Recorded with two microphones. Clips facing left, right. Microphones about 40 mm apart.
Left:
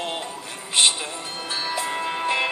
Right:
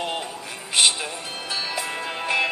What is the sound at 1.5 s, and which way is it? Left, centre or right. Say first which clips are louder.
Music: left 1 dB; centre.